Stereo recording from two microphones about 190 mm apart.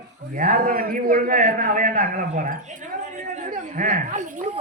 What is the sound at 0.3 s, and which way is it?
A man's voice, 50° right (ahead or behind).